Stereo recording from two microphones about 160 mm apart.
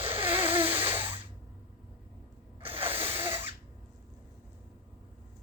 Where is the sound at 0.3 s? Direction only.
15° right (ahead or behind).